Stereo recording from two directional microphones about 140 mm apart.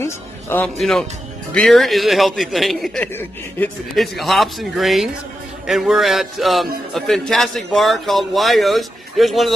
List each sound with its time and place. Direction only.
0.0 s music: 15° left (ahead or behind)
0.7 s a man's voice: centre (ahead or behind)
3.2 s speech: 15° left (ahead or behind)
3.9 s a man's voice: centre (ahead or behind)